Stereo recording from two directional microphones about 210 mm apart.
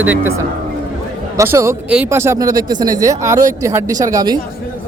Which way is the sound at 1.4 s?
15° right (ahead or behind).